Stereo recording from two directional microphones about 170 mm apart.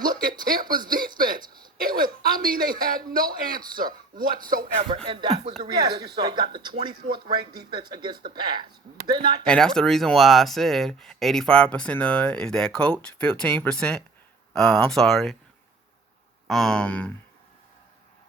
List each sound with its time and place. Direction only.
0.0 s speech: 55° right (ahead or behind)
1.4 s a sound: 25° right (ahead or behind)
1.9 s speech: 55° right (ahead or behind)
5.0 s speech: 30° right (ahead or behind)
9.5 s speech: 5° left (ahead or behind)
16.5 s speech: centre (ahead or behind)